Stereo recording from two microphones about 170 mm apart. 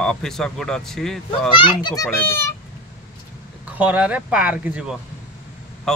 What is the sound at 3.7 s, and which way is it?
Speech, 10° right (ahead or behind).